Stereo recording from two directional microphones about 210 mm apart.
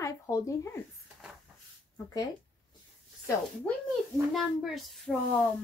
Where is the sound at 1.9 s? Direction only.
20° left (ahead or behind).